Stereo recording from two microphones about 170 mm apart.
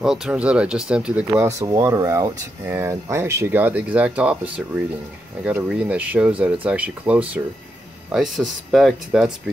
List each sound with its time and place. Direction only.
0.0 s speech: 5° right (ahead or behind)
1.6 s speech: 20° right (ahead or behind); by 9.3 s centre (ahead or behind)